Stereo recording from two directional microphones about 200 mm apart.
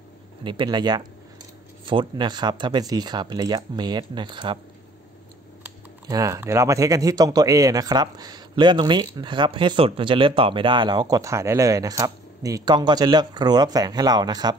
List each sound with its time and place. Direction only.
0.4 s speech: 25° right (ahead or behind)
5.6 s speech: 15° right (ahead or behind)